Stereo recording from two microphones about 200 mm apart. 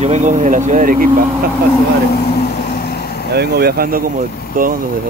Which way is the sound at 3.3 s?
50° right (ahead or behind).